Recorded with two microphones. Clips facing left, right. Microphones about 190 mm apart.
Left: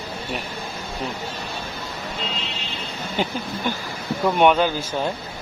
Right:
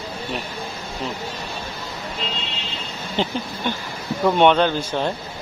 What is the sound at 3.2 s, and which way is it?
Speech, 10° left (ahead or behind).